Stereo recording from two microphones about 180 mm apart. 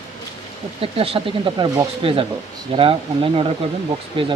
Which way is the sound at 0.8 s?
30° right (ahead or behind).